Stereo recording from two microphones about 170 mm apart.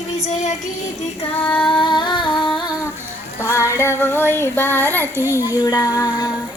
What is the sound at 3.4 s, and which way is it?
Child singing, 15° left (ahead or behind).